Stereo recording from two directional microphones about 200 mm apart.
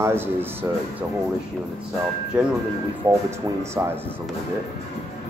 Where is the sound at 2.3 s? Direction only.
5° right (ahead or behind).